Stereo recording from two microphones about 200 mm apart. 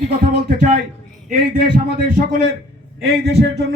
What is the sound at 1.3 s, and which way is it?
A man's voice, 45° right (ahead or behind).